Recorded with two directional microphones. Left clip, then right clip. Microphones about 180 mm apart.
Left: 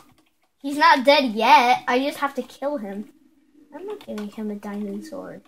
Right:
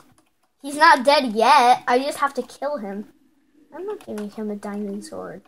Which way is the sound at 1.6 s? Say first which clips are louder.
Right 3 dB; 45° right (ahead or behind).